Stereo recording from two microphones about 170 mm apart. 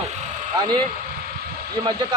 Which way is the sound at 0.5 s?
25° right (ahead or behind).